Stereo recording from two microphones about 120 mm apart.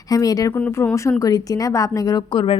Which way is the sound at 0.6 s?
20° left (ahead or behind).